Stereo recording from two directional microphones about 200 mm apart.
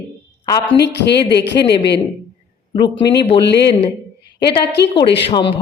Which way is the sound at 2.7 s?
25° left (ahead or behind).